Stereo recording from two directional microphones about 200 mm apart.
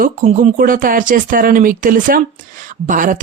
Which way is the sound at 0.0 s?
40° right (ahead or behind).